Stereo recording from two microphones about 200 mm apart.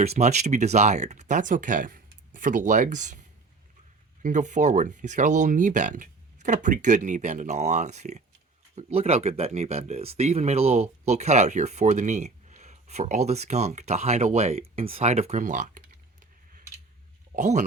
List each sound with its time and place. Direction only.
0.0 s speech: 35° right (ahead or behind)
17.3 s speech: 35° right (ahead or behind)